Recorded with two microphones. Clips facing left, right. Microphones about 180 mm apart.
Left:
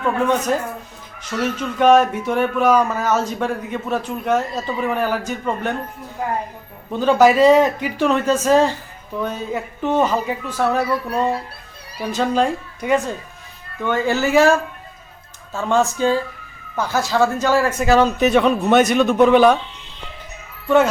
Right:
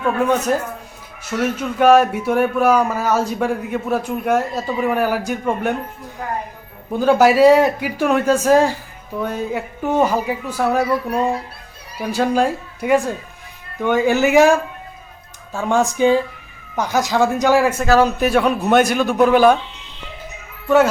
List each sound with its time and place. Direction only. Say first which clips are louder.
0.0 s speech: right 1 dB; 10° right (ahead or behind)
6.9 s speech: even; 10° right (ahead or behind)
17.7 s a man's voice: even; centre (ahead or behind)
20.7 s a man's voice: right 1 dB; 5° right (ahead or behind)